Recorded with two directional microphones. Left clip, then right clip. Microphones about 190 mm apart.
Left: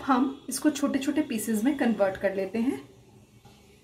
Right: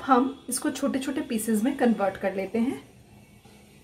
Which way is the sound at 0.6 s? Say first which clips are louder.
Left 2 dB; 15° right (ahead or behind).